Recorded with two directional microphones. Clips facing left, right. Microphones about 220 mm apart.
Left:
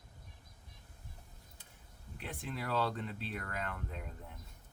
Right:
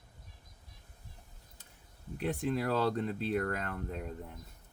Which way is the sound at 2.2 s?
40° right (ahead or behind).